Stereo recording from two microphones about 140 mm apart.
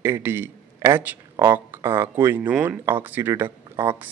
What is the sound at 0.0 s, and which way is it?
Speech, 15° right (ahead or behind).